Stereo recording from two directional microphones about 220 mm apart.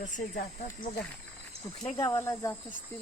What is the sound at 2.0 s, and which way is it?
Speech, 10° left (ahead or behind).